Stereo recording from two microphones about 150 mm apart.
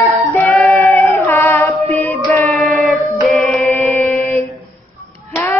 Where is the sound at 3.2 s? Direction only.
Centre (ahead or behind).